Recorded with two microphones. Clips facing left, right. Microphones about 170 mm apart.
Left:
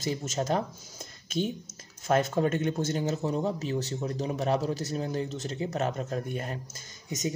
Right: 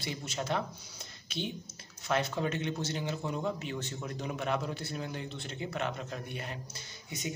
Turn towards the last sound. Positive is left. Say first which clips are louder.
# left 6 dB
turn(degrees=45)  # may be behind; listen again after turning